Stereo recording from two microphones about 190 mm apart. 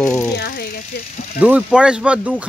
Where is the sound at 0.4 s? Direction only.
55° left (ahead or behind).